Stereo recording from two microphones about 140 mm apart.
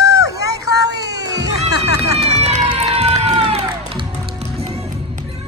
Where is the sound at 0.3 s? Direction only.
25° right (ahead or behind).